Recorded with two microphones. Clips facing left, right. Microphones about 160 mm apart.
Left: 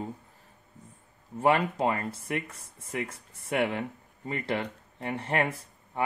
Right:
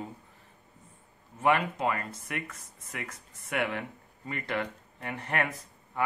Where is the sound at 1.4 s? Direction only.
30° left (ahead or behind).